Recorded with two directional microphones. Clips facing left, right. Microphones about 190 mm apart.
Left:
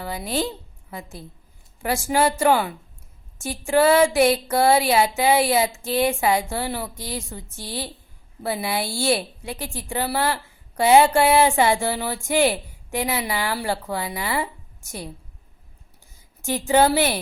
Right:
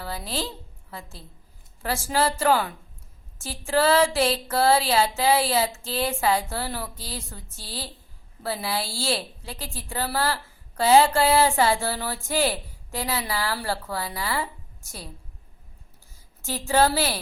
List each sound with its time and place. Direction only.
0.0 s a woman's voice: 15° left (ahead or behind)
16.4 s a woman's voice: 20° left (ahead or behind)